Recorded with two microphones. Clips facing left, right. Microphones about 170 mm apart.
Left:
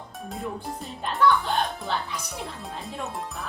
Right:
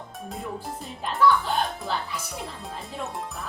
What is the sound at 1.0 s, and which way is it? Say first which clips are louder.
Music: even; centre (ahead or behind).